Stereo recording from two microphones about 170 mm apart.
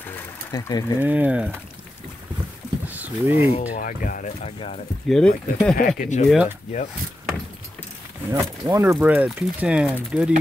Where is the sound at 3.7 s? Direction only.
55° left (ahead or behind).